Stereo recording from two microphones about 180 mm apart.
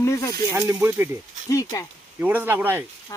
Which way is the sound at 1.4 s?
20° left (ahead or behind).